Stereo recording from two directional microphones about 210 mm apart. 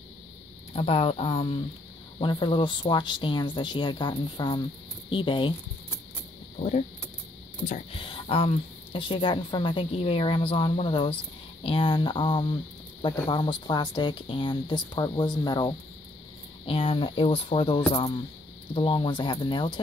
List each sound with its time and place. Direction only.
0.7 s speech: 25° left (ahead or behind)
6.6 s speech: 30° left (ahead or behind)